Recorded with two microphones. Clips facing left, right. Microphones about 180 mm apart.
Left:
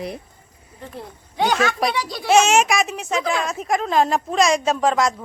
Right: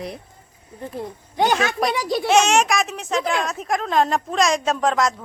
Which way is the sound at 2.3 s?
Centre (ahead or behind).